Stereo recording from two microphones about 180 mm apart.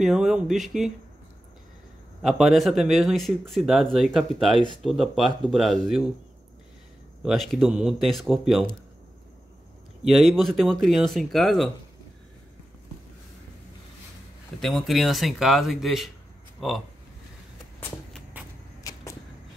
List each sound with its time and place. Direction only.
0.0 s speech: 5° right (ahead or behind)
2.2 s speech: centre (ahead or behind)
7.2 s speech: centre (ahead or behind)
10.0 s speech: centre (ahead or behind)
14.6 s speech: centre (ahead or behind)
17.7 s walk: 10° left (ahead or behind)
18.9 s arrow: 20° left (ahead or behind)